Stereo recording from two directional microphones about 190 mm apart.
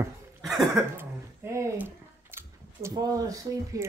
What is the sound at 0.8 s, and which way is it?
Speech, 15° right (ahead or behind).